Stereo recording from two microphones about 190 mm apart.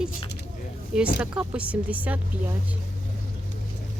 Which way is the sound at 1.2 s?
5° right (ahead or behind).